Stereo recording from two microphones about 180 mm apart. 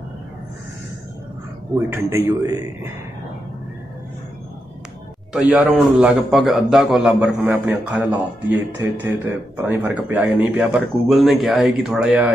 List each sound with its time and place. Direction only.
1.9 s a man's voice: 15° right (ahead or behind)
5.3 s a man's voice: 5° right (ahead or behind)